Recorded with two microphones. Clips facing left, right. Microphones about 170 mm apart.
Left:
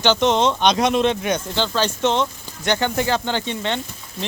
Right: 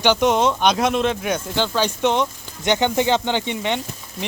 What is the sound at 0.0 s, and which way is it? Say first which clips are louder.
Speech: even; 10° right (ahead or behind).